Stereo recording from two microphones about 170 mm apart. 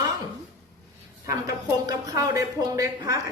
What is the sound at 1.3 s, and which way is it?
A woman's voice, 20° right (ahead or behind).